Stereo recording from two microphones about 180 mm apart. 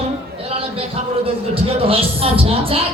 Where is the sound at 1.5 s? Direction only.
30° right (ahead or behind).